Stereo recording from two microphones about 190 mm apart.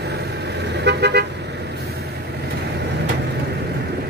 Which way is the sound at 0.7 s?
60° right (ahead or behind).